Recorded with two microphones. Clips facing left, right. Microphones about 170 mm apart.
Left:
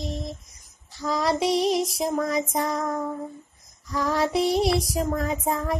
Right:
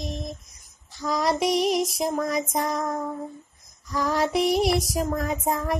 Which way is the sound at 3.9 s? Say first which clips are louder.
Even; 30° left (ahead or behind).